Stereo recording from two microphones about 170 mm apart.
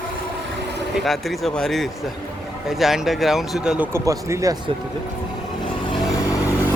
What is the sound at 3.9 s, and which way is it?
Speech, 20° right (ahead or behind).